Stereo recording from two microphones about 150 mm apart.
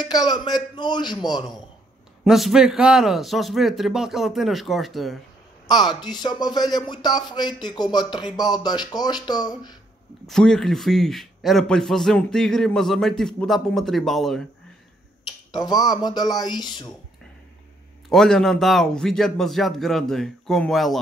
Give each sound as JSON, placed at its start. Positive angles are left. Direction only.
{"t": 0.1, "sound": "speech", "side_deg": 25}
{"t": 2.2, "sound": "a man's voice", "side_deg": 0}
{"t": 5.7, "sound": "speech", "side_deg": 30}
{"t": 10.2, "sound": "a man's voice", "side_deg": 5}
{"t": 15.5, "sound": "speech", "side_deg": 25}
{"t": 18.1, "sound": "a man's voice", "side_deg": 5}